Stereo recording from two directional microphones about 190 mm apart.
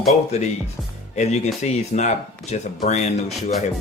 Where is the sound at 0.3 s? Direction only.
35° left (ahead or behind).